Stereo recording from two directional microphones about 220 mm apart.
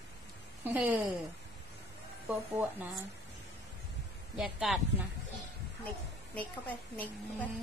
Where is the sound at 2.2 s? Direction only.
10° right (ahead or behind).